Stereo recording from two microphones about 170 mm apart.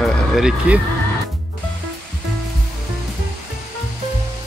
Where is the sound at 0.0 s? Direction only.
Centre (ahead or behind).